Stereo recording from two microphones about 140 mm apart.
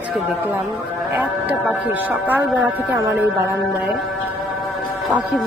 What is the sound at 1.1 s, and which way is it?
Speech, 10° right (ahead or behind).